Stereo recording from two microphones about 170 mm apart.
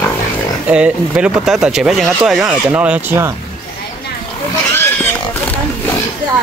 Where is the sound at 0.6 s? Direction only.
5° right (ahead or behind).